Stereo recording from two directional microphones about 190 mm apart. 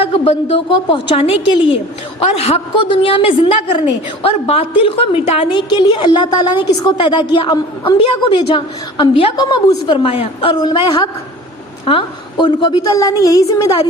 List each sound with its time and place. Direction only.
0.0 s a woman's voice: 30° left (ahead or behind)
2.2 s a woman's voice: 30° left (ahead or behind)